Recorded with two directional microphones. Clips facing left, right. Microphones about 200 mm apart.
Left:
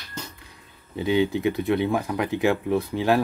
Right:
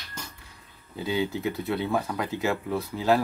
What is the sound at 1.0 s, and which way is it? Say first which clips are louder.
Speech: left 6 dB; 20° left (ahead or behind).